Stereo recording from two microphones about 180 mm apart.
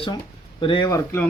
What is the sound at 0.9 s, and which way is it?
Speech, 15° left (ahead or behind).